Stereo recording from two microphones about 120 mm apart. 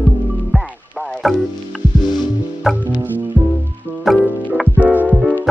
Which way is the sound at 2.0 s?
35° left (ahead or behind).